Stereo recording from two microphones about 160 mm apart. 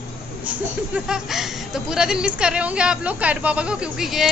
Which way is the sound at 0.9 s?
5° right (ahead or behind).